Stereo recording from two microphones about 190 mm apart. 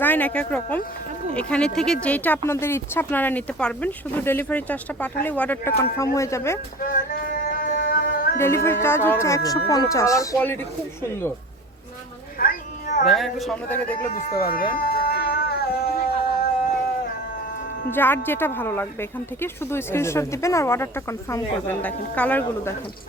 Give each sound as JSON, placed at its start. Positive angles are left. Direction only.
{"t": 0.0, "sound": "speech", "side_deg": 10}
{"t": 6.8, "sound": "music", "side_deg": 45}
{"t": 8.4, "sound": "speech", "side_deg": 15}
{"t": 12.4, "sound": "a sound", "side_deg": 45}
{"t": 13.1, "sound": "a man's voice", "side_deg": 0}
{"t": 14.1, "sound": "speech", "side_deg": 50}
{"t": 14.7, "sound": "a sound", "side_deg": 50}
{"t": 17.9, "sound": "speech", "side_deg": 10}